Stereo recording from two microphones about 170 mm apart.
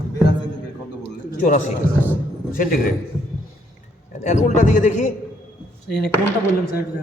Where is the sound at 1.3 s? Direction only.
50° left (ahead or behind).